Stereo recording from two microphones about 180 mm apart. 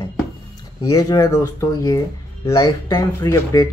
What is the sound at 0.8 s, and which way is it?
Speech, 20° left (ahead or behind).